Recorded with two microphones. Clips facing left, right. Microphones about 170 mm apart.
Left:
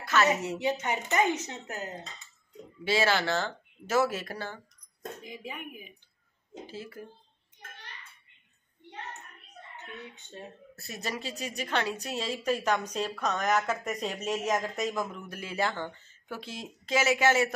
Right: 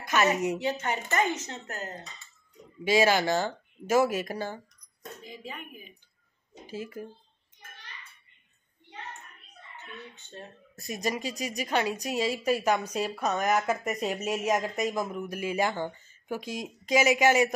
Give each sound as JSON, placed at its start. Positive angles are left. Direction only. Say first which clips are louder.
{"t": 0.0, "sound": "a sound", "louder": "even", "side_deg": -15}
{"t": 0.6, "sound": "speech", "louder": "even", "side_deg": 15}
{"t": 2.8, "sound": "a woman's voice", "louder": "right 4 dB", "side_deg": -15}
{"t": 5.2, "sound": "speech", "louder": "left 1 dB", "side_deg": 10}
{"t": 6.7, "sound": "a woman's voice", "louder": "right 6 dB", "side_deg": -15}
{"t": 10.1, "sound": "speech", "louder": "even", "side_deg": 15}
{"t": 10.8, "sound": "a woman's voice", "louder": "right 5 dB", "side_deg": -15}